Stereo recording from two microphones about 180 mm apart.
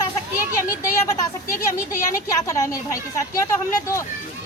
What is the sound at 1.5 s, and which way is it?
Speech, 15° left (ahead or behind).